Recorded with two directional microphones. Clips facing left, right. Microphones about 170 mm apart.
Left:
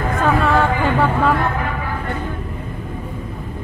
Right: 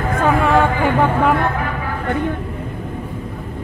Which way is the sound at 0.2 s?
15° right (ahead or behind).